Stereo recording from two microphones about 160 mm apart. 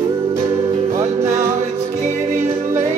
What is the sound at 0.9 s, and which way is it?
Music, 50° right (ahead or behind).